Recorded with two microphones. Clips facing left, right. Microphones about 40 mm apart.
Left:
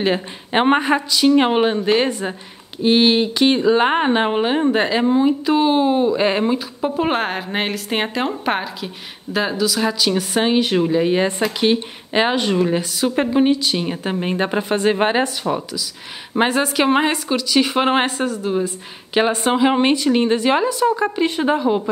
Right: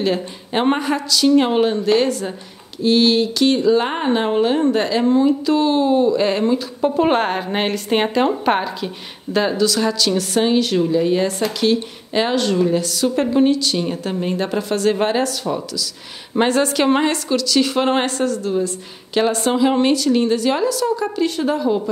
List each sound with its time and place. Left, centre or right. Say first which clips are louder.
0.0 s speech: even; left
6.8 s a woman's voice: right 4 dB; centre; by 21.9 s left